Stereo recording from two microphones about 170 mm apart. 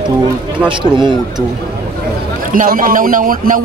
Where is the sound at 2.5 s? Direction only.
55° right (ahead or behind).